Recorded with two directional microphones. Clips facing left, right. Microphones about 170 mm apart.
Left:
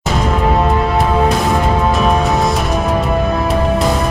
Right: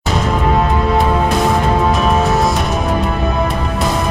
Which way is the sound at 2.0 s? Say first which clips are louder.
Even; centre (ahead or behind).